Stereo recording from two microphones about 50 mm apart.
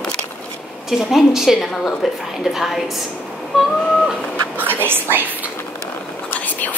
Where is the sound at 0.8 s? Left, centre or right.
Centre.